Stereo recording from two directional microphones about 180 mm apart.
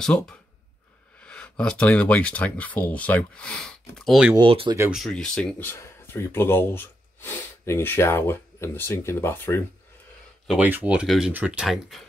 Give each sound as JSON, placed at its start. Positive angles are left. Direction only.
{"t": 0.0, "sound": "speech", "side_deg": 5}
{"t": 4.4, "sound": "speech", "side_deg": -30}
{"t": 4.7, "sound": "speech", "side_deg": -5}
{"t": 10.4, "sound": "speech", "side_deg": -5}